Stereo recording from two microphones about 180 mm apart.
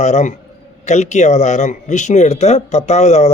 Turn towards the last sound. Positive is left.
turn(degrees=40)  # may be behind; listen again after turning